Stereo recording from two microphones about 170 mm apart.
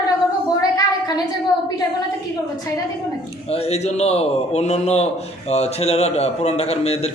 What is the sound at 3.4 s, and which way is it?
A man's voice, 35° left (ahead or behind).